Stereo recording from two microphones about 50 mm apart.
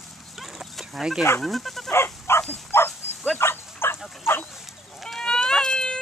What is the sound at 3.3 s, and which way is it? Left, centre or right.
Dog, left.